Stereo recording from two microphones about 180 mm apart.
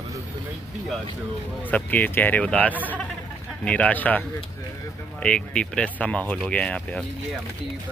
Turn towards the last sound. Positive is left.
turn(degrees=5)  # may be behind; listen again after turning